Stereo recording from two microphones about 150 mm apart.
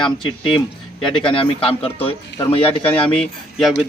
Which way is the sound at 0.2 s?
35° left (ahead or behind).